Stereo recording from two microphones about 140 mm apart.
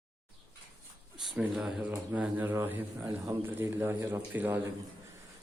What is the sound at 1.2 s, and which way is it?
Speech, 5° right (ahead or behind).